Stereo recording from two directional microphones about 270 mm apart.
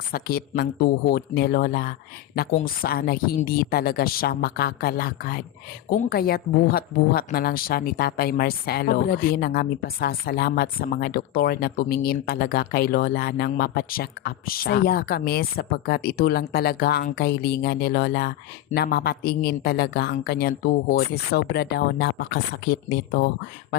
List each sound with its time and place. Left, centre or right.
0.1 s a woman's voice: left